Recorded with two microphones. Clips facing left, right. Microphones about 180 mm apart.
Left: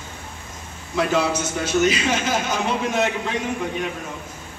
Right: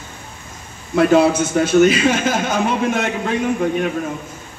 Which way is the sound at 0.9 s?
55° right (ahead or behind).